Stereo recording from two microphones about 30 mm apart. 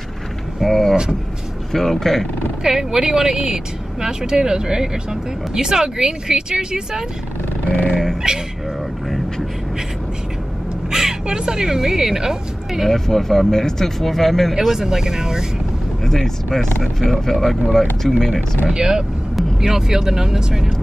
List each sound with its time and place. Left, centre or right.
0.6 s vehicle: centre
1.7 s speech: centre
2.6 s speech: centre
7.9 s dog: centre
10.9 s speech: centre
12.9 s speech: centre
14.7 s speech: centre
16.0 s vehicle: centre
17.1 s speech: centre
18.7 s speech: right